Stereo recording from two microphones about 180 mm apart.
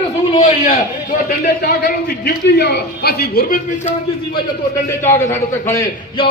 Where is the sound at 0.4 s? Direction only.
45° left (ahead or behind).